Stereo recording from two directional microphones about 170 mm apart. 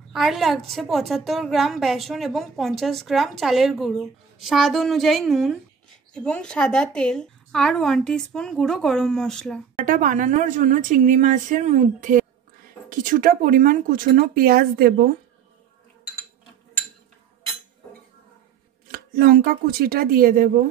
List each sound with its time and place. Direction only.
0.1 s a woman's voice: centre (ahead or behind)
9.8 s a woman's voice: 50° right (ahead or behind)
18.9 s speech: 60° right (ahead or behind)